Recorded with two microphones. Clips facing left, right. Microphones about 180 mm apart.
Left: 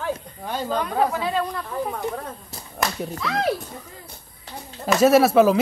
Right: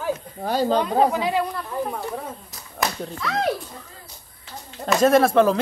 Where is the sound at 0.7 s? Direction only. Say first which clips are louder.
Even; 25° right (ahead or behind).